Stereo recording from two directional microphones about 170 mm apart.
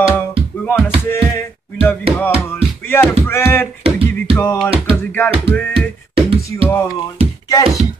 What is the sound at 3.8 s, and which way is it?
Music, 35° right (ahead or behind).